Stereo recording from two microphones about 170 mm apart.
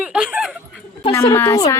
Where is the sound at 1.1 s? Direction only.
15° left (ahead or behind).